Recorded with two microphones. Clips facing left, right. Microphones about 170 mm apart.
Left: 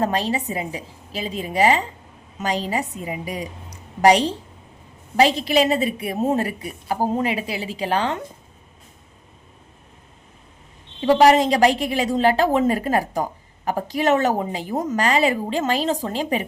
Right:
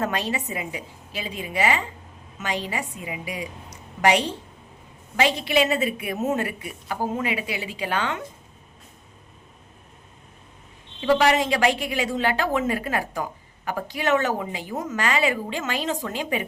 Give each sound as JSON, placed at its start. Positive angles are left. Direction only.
{"t": 0.0, "sound": "a woman's voice", "side_deg": 35}
{"t": 11.0, "sound": "a woman's voice", "side_deg": 40}